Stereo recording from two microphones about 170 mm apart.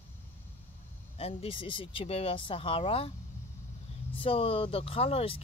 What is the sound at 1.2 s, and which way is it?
Speech, 35° left (ahead or behind).